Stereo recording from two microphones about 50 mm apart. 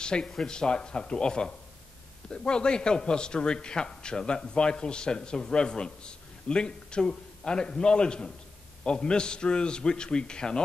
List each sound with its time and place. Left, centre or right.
0.0 s a man's voice: centre